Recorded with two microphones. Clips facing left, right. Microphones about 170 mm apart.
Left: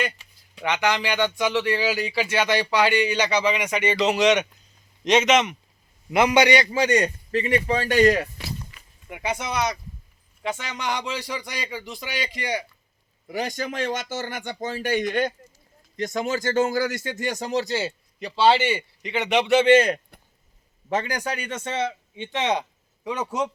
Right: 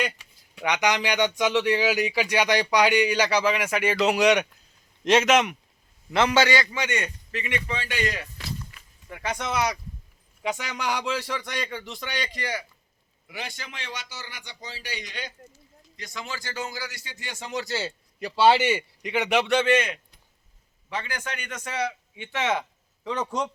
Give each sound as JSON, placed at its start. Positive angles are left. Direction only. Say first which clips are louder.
{"t": 0.5, "sound": "a man's voice", "louder": "left 1 dB", "side_deg": -15}
{"t": 6.1, "sound": "a man's voice", "louder": "left 3 dB", "side_deg": 15}
{"t": 6.7, "sound": "a man's voice", "louder": "left 8 dB", "side_deg": 35}
{"t": 9.0, "sound": "a man's voice", "louder": "left 2 dB", "side_deg": 10}
{"t": 10.4, "sound": "a man's voice", "louder": "even", "side_deg": -10}
{"t": 13.2, "sound": "speech", "louder": "left 10 dB", "side_deg": 40}
{"t": 18.2, "sound": "speech", "louder": "even", "side_deg": -10}
{"t": 19.6, "sound": "a man's voice", "louder": "left 7 dB", "side_deg": 35}